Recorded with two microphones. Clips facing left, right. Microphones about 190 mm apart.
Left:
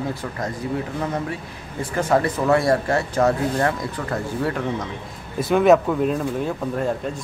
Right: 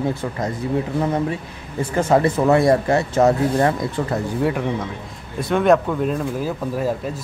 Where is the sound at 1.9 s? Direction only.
25° right (ahead or behind).